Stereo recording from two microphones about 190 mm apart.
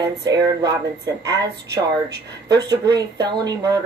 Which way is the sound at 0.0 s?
20° right (ahead or behind).